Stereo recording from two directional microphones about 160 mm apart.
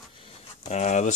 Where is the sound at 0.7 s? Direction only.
45° left (ahead or behind).